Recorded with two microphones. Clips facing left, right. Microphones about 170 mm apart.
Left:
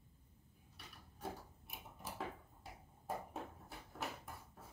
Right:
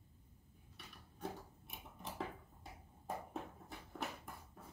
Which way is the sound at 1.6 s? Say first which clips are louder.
Even; centre (ahead or behind).